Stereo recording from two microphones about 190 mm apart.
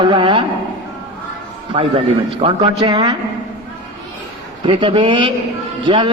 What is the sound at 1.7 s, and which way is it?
A man's voice, 30° right (ahead or behind).